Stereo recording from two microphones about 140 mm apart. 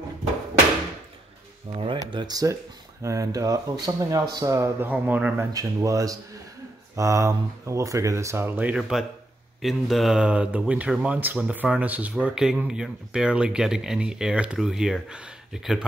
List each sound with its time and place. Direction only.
1.8 s speech: 35° right (ahead or behind); by 5.5 s 10° right (ahead or behind)
5.5 s speech: 25° right (ahead or behind); by 15.8 s 5° right (ahead or behind)